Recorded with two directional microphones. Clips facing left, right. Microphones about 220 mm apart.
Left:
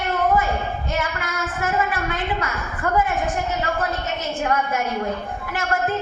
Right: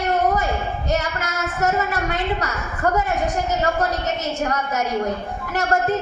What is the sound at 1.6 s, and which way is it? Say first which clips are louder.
A woman's voice: right 2 dB; 40° right (ahead or behind).